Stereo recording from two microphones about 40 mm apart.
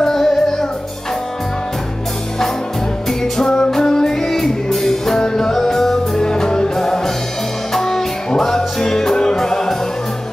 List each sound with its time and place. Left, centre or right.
0.0 s music: centre
3.4 s music: left